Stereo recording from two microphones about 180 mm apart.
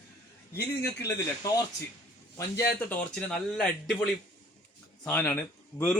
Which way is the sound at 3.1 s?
5° left (ahead or behind).